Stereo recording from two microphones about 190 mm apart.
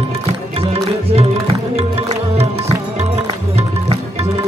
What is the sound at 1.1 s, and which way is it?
Music, 30° right (ahead or behind).